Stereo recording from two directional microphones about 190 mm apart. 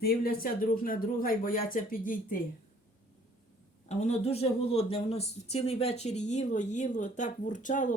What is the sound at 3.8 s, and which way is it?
Speech, 35° left (ahead or behind).